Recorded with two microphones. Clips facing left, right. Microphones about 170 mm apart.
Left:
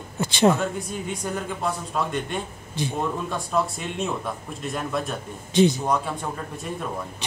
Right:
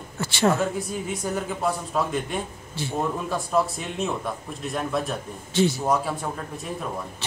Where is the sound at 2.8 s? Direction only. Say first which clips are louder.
Left 4 dB; 15° left (ahead or behind).